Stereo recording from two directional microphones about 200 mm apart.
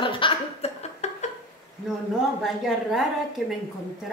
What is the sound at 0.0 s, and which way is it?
Chuckle, 25° left (ahead or behind).